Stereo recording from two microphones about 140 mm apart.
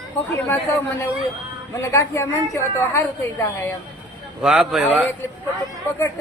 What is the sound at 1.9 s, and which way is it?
A woman's voice, 20° left (ahead or behind).